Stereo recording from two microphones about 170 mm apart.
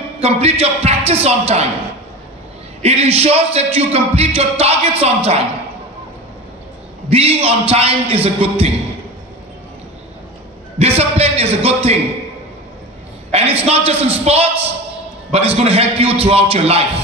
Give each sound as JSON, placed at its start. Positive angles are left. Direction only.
{"t": 0.2, "sound": "music", "side_deg": -35}
{"t": 2.8, "sound": "music", "side_deg": -35}
{"t": 7.1, "sound": "music", "side_deg": -35}
{"t": 10.8, "sound": "music", "side_deg": -35}
{"t": 13.3, "sound": "music", "side_deg": -35}